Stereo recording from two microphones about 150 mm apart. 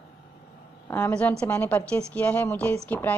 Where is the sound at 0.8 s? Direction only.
15° left (ahead or behind).